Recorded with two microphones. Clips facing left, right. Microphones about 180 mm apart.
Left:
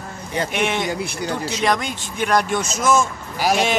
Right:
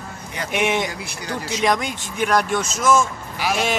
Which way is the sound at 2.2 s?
Centre (ahead or behind).